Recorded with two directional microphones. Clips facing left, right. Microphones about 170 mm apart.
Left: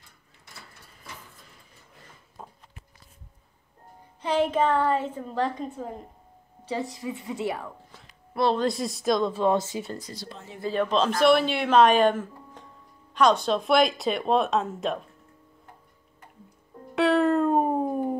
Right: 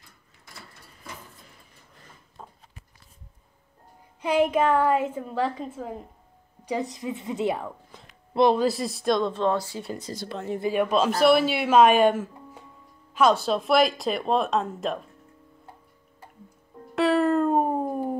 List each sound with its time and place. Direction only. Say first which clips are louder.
4.2 s speech: right 2 dB; 10° right (ahead or behind)
6.6 s a woman's voice: right 2 dB; 15° right (ahead or behind)
8.5 s speech: right 2 dB; centre (ahead or behind)
9.5 s speech: left 2 dB; 20° left (ahead or behind)
10.1 s speech: right 10 dB; 60° right (ahead or behind)
10.6 s speech: right 1 dB; 10° right (ahead or behind)
16.9 s a sound: even; centre (ahead or behind)